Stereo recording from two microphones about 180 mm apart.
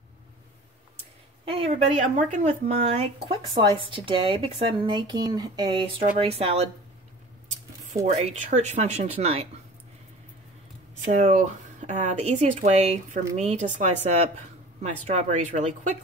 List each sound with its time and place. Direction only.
1.4 s a woman's voice: 30° right (ahead or behind)
8.0 s speech: 40° right (ahead or behind)
11.1 s speech: 40° right (ahead or behind)